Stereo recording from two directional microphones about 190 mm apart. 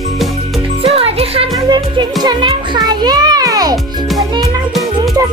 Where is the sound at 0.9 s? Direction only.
30° right (ahead or behind).